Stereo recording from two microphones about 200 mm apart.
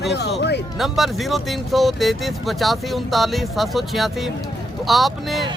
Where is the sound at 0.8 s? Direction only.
Centre (ahead or behind).